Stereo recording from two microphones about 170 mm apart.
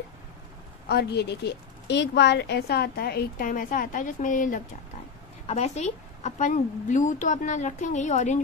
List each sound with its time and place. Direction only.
0.8 s a woman's voice: 75° left (ahead or behind); by 4.6 s 50° left (ahead or behind)
5.5 s a woman's voice: 40° left (ahead or behind)